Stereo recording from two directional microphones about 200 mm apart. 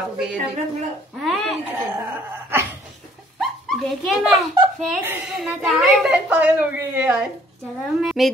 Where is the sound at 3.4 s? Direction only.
Centre (ahead or behind).